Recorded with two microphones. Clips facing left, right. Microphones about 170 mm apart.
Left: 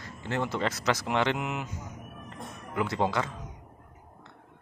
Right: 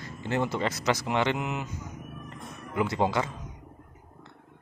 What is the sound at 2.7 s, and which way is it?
Speech, 5° right (ahead or behind).